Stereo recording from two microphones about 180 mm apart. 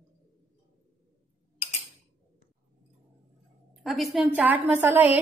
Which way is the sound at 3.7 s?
Centre (ahead or behind).